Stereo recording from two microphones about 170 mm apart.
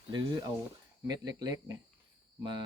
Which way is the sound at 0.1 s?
25° right (ahead or behind).